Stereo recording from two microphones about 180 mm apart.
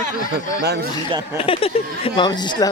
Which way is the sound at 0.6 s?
65° right (ahead or behind).